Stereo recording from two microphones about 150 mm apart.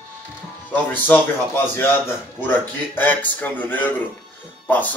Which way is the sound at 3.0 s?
10° left (ahead or behind).